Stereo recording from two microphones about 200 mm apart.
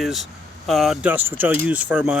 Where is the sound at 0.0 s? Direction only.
Centre (ahead or behind).